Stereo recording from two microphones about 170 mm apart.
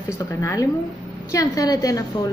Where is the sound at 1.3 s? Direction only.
20° left (ahead or behind).